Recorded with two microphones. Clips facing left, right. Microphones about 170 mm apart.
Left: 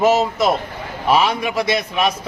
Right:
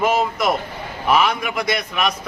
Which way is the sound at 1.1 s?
30° left (ahead or behind).